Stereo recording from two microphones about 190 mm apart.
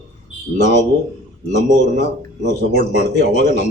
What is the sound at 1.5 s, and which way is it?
Speech, 35° left (ahead or behind).